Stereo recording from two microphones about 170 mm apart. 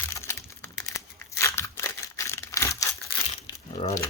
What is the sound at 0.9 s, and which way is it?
Crumpling, 15° left (ahead or behind).